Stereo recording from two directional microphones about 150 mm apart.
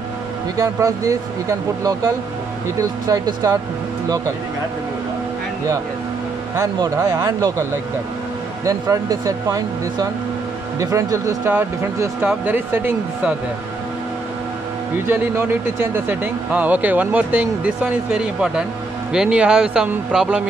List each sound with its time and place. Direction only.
0.6 s speech: 20° right (ahead or behind)
3.1 s speech: 25° right (ahead or behind)
7.0 s speech: 20° right (ahead or behind)
8.6 s speech: 25° right (ahead or behind)
15.0 s speech: 15° right (ahead or behind)